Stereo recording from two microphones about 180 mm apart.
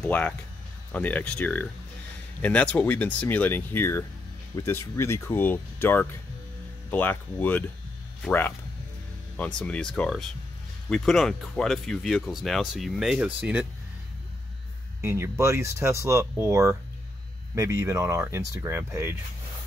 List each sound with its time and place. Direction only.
0.0 s speech: 10° left (ahead or behind)
15.0 s speech: 15° right (ahead or behind)